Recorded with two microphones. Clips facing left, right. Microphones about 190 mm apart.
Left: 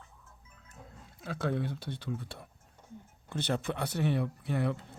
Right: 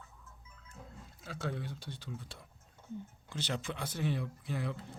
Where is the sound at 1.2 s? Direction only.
55° left (ahead or behind).